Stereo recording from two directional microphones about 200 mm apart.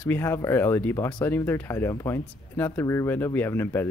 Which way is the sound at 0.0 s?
10° left (ahead or behind).